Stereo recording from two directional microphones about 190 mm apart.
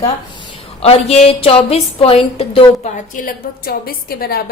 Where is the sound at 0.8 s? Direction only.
30° left (ahead or behind).